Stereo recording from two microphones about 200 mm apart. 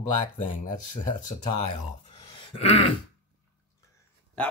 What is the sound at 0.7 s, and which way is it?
Speech, 40° left (ahead or behind).